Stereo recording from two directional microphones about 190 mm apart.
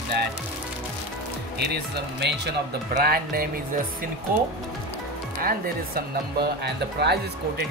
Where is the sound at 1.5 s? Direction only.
60° right (ahead or behind).